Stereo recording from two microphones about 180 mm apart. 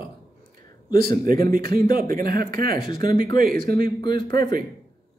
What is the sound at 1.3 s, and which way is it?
A man's voice, 50° right (ahead or behind).